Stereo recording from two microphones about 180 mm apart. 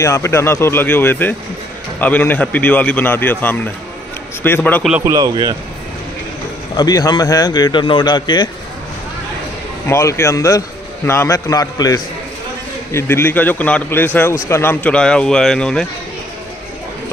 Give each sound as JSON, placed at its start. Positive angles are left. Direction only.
{"t": 0.0, "sound": "a man's voice", "side_deg": 15}
{"t": 5.0, "sound": "speech", "side_deg": -20}
{"t": 6.8, "sound": "speech", "side_deg": 20}
{"t": 9.8, "sound": "a man's voice", "side_deg": 15}